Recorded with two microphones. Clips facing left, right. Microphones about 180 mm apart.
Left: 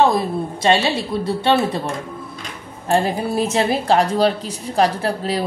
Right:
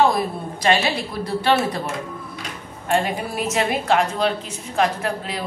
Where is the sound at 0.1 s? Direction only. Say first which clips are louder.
Left 3 dB; 25° left (ahead or behind).